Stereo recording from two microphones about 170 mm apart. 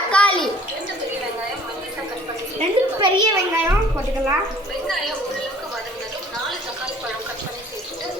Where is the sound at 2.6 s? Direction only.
25° right (ahead or behind).